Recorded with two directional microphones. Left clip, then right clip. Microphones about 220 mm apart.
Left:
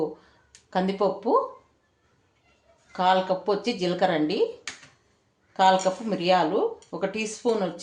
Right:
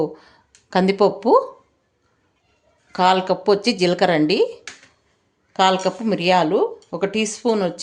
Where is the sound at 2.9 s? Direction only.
55° right (ahead or behind).